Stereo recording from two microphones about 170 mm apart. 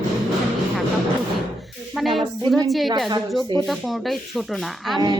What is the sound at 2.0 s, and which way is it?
Speech, centre (ahead or behind).